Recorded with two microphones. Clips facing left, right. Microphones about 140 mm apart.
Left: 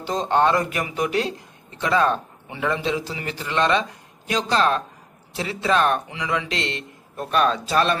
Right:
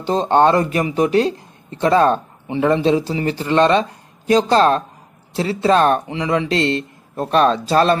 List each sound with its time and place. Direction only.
0.0 s speech: 30° right (ahead or behind)